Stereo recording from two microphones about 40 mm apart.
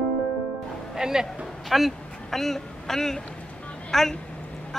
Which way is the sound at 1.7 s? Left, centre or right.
Centre.